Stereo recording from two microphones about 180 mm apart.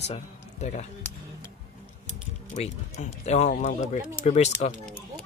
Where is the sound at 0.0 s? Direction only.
40° left (ahead or behind).